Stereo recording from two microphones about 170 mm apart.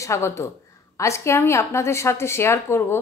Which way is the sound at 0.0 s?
15° left (ahead or behind).